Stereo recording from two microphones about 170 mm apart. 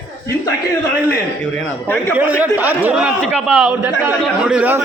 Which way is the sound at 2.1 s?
10° right (ahead or behind).